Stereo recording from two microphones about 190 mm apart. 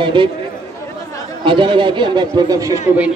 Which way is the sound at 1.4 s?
25° right (ahead or behind).